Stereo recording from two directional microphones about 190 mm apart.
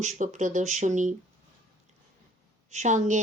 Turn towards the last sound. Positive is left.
turn(degrees=-40)  # may be behind; listen again after turning